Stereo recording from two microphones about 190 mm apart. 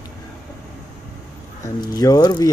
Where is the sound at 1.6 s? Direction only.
20° left (ahead or behind).